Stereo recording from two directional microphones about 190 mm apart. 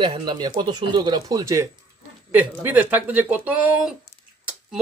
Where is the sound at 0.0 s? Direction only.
25° right (ahead or behind).